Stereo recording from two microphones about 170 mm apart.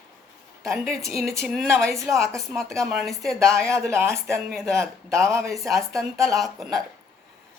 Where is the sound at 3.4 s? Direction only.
15° right (ahead or behind).